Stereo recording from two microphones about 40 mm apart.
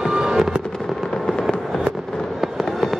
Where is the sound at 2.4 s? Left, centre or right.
Centre.